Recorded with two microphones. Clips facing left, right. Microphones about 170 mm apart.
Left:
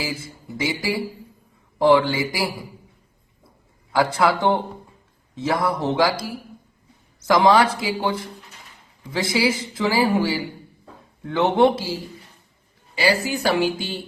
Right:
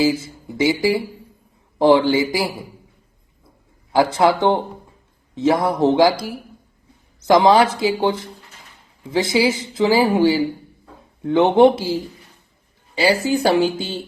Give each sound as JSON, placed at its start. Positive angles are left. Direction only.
{"t": 0.0, "sound": "speech", "side_deg": -20}
{"t": 3.9, "sound": "speech", "side_deg": -25}
{"t": 9.1, "sound": "speech", "side_deg": -20}
{"t": 13.0, "sound": "speech", "side_deg": -25}